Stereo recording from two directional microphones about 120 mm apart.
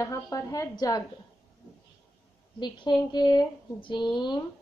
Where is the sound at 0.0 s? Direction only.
25° left (ahead or behind).